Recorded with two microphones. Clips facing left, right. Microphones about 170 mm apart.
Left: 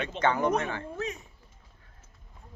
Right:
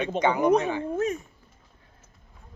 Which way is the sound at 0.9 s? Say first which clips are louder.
Right 10 dB; 45° right (ahead or behind).